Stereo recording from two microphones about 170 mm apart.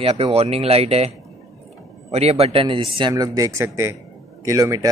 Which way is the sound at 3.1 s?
20° right (ahead or behind).